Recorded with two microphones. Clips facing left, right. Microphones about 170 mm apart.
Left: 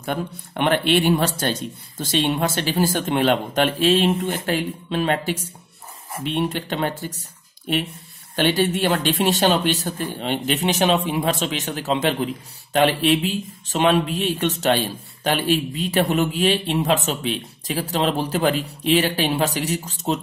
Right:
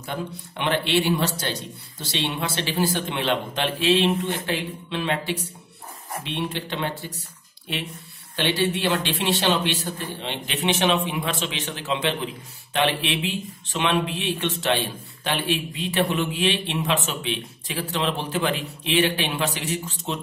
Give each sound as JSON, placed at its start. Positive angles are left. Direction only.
{"t": 0.0, "sound": "speech", "side_deg": 55}
{"t": 8.4, "sound": "speech", "side_deg": 45}